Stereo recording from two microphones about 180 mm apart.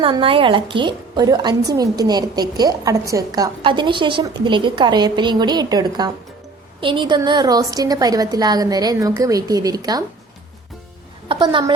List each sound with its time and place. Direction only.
0.0 s a woman's voice: 30° right (ahead or behind)
11.3 s a woman's voice: 25° right (ahead or behind)